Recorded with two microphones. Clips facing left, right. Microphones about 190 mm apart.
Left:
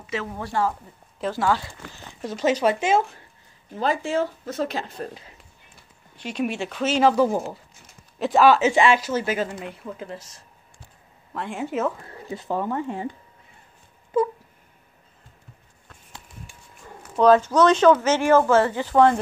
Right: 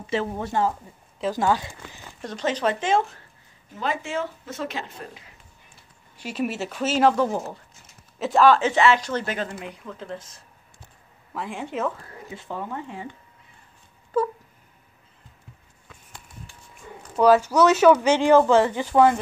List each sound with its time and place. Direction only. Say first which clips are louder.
0.0 s a woman's voice: right 4 dB; 30° right (ahead or behind)
2.2 s speech: left 4 dB; 10° left (ahead or behind)
3.7 s speech: left 4 dB; 35° left (ahead or behind)
6.1 s speech: left 1 dB; 5° right (ahead or behind)
7.2 s speech: left 3 dB; 10° left (ahead or behind)
11.3 s speech: left 3 dB; centre (ahead or behind)
12.3 s speech: left 7 dB; 40° left (ahead or behind)
17.2 s speech: left 1 dB; 10° right (ahead or behind)